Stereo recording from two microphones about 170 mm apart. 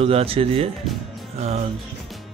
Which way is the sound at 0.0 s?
35° right (ahead or behind).